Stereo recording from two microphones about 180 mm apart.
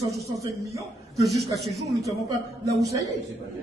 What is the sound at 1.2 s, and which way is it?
Speech, centre (ahead or behind).